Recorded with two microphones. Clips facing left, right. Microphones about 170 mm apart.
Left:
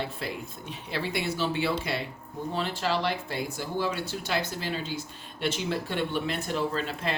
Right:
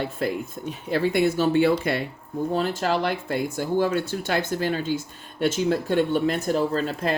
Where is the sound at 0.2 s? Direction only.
50° right (ahead or behind).